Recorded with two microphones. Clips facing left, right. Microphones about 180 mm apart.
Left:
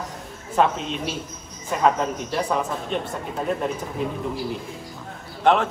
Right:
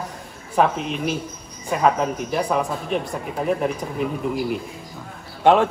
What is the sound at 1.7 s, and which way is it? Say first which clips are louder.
Speech: right 1 dB; 5° right (ahead or behind).